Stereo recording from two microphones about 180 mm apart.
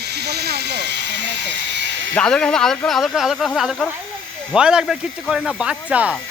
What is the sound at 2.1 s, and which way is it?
Speech, 5° left (ahead or behind).